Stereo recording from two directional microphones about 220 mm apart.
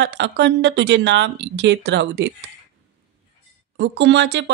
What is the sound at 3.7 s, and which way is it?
Speech, 55° right (ahead or behind).